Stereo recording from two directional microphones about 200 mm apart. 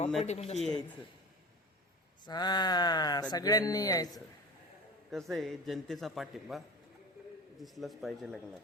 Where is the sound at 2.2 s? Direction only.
20° left (ahead or behind).